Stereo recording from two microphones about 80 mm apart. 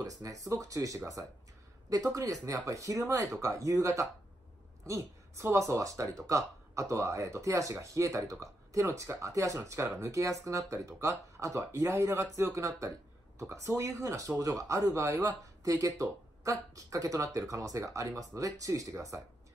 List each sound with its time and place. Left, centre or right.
0.0 s speech: right